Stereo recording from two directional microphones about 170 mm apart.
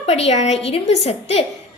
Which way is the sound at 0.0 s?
35° left (ahead or behind).